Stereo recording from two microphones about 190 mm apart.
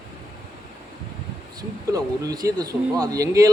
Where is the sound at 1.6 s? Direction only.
20° right (ahead or behind).